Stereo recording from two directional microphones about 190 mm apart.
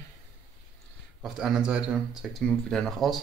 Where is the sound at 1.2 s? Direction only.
5° right (ahead or behind).